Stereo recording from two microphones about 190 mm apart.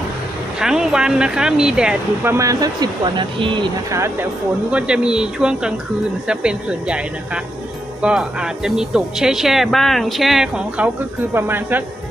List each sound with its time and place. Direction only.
0.6 s speech: 5° right (ahead or behind)
2.3 s speech: 20° right (ahead or behind)
4.0 s speech: 10° right (ahead or behind)
8.0 s speech: 5° right (ahead or behind)